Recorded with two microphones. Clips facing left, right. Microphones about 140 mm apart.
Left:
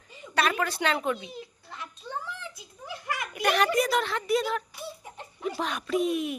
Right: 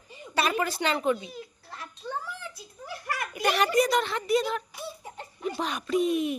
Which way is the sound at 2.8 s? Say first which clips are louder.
Even; 20° left (ahead or behind).